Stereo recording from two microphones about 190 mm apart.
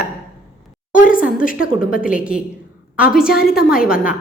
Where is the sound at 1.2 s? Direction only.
45° left (ahead or behind).